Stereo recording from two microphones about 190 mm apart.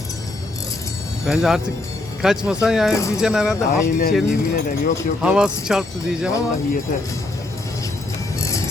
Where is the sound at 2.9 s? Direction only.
15° left (ahead or behind).